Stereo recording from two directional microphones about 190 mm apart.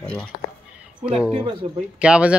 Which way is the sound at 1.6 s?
30° right (ahead or behind).